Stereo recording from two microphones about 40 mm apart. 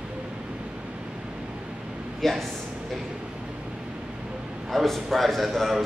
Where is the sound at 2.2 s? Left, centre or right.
Centre.